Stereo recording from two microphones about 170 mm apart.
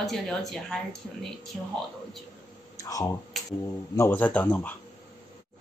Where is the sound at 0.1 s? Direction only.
Centre (ahead or behind).